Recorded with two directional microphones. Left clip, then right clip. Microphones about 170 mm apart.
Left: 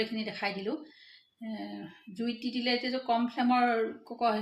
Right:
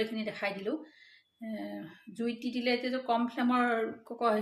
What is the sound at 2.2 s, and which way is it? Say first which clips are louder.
Speech: even; 15° right (ahead or behind).